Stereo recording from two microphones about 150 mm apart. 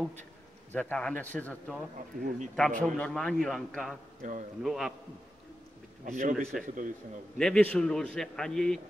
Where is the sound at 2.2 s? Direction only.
55° right (ahead or behind).